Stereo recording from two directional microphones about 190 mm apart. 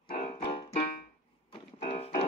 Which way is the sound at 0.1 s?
50° left (ahead or behind).